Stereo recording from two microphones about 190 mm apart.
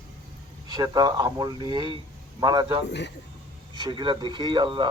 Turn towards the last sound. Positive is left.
turn(degrees=-25)  # may be behind; listen again after turning